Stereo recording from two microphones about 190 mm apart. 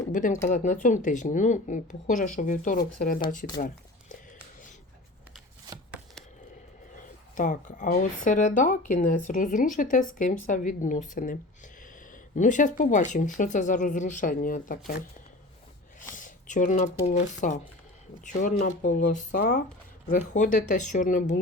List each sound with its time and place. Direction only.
0.1 s speech: 45° left (ahead or behind)
6.9 s speech: 45° left (ahead or behind)
16.1 s speech: 40° left (ahead or behind)